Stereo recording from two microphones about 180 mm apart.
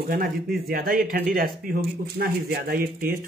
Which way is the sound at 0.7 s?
55° right (ahead or behind).